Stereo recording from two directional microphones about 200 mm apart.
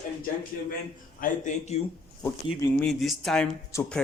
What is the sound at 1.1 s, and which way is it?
Speech, 40° left (ahead or behind).